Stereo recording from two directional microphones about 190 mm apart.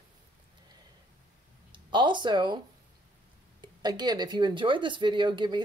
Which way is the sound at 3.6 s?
20° right (ahead or behind).